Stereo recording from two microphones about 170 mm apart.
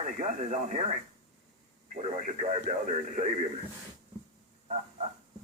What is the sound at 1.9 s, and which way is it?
Speech, 45° right (ahead or behind).